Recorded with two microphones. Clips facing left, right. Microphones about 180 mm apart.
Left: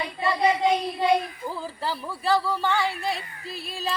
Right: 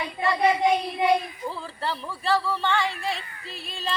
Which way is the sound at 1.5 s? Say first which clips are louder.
Even; 5° left (ahead or behind).